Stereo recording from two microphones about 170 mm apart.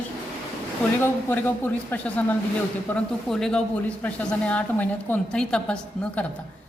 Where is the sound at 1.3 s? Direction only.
10° left (ahead or behind).